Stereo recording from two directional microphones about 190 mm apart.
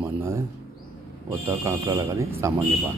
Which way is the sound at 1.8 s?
20° right (ahead or behind).